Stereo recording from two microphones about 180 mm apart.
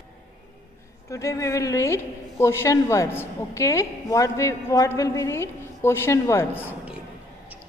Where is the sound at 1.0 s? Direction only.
20° left (ahead or behind).